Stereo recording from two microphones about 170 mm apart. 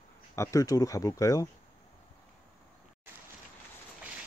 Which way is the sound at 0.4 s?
20° left (ahead or behind).